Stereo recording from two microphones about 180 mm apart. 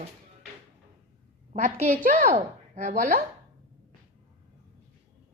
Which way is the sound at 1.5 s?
40° right (ahead or behind).